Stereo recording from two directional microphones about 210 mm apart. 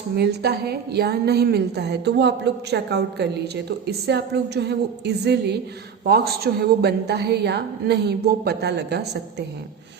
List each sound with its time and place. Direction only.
0.2 s a woman's voice: 50° right (ahead or behind)